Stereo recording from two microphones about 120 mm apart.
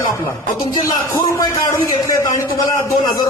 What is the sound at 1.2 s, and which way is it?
A man's voice, 25° left (ahead or behind).